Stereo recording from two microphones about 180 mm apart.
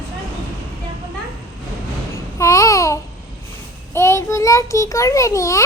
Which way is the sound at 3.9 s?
15° left (ahead or behind).